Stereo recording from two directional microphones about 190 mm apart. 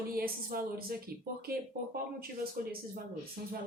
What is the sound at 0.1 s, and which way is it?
Speech, 50° right (ahead or behind).